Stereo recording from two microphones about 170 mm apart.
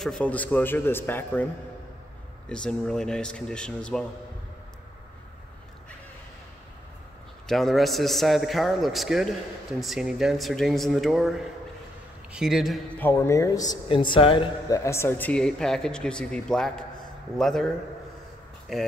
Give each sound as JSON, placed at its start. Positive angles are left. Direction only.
{"t": 0.0, "sound": "speech", "side_deg": 5}
{"t": 2.5, "sound": "speech", "side_deg": 5}
{"t": 7.4, "sound": "speech", "side_deg": 0}
{"t": 13.0, "sound": "speech", "side_deg": 15}
{"t": 14.7, "sound": "speech", "side_deg": 15}
{"t": 18.7, "sound": "speech", "side_deg": 0}